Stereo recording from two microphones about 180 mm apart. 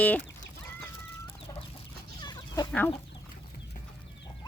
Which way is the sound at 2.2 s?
20° left (ahead or behind).